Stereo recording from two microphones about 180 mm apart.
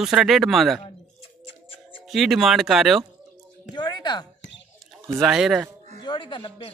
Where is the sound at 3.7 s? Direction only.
25° left (ahead or behind).